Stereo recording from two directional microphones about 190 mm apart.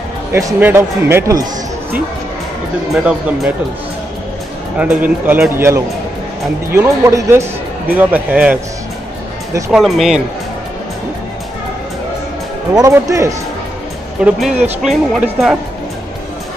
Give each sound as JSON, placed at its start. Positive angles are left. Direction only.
{"t": 0.3, "sound": "speech", "side_deg": -15}
{"t": 2.9, "sound": "speech", "side_deg": -5}
{"t": 4.7, "sound": "speech", "side_deg": -10}
{"t": 9.7, "sound": "speech", "side_deg": 0}
{"t": 12.7, "sound": "speech", "side_deg": -15}
{"t": 14.2, "sound": "speech", "side_deg": 0}